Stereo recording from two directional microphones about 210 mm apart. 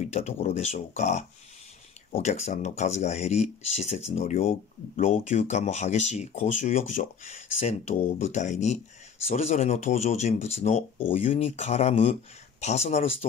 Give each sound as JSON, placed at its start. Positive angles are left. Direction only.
{"t": 0.0, "sound": "speech", "side_deg": 35}